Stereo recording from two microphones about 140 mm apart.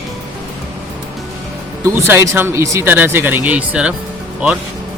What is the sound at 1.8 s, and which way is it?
Speech, 15° right (ahead or behind).